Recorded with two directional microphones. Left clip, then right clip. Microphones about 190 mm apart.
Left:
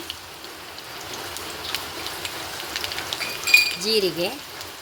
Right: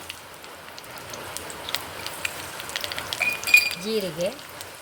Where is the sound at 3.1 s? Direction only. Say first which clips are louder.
Right 5 dB; 20° right (ahead or behind).